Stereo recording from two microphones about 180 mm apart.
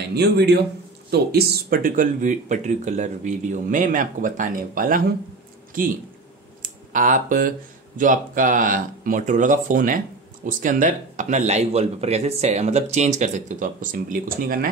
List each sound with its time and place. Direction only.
0.1 s a man's voice: 65° right (ahead or behind)
6.6 s speech: 45° right (ahead or behind)